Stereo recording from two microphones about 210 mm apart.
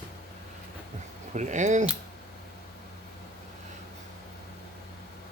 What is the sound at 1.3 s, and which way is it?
Speech, 35° right (ahead or behind).